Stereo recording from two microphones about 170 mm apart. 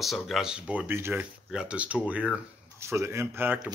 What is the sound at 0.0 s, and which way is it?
Speech, centre (ahead or behind).